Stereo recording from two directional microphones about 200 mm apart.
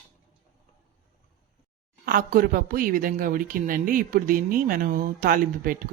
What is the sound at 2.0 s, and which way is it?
A woman's voice, 45° right (ahead or behind).